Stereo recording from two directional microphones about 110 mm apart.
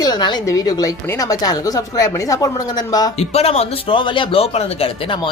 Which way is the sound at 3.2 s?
70° left (ahead or behind).